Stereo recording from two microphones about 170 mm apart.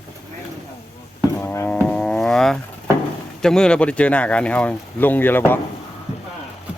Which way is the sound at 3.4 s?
5° left (ahead or behind).